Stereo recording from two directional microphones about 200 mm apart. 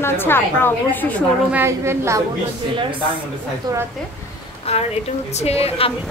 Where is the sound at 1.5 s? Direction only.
10° right (ahead or behind).